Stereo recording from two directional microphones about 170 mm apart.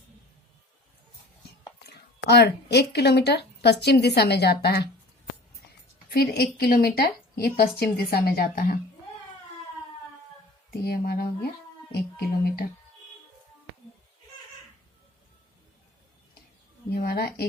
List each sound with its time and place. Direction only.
1.9 s speech: 75° left (ahead or behind)
6.1 s a woman's voice: 65° left (ahead or behind)
10.8 s a woman's voice: 65° left (ahead or behind)
16.9 s a woman's voice: 60° left (ahead or behind)